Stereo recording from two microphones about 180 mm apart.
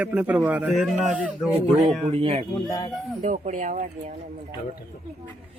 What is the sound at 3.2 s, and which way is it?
Speech, 45° right (ahead or behind).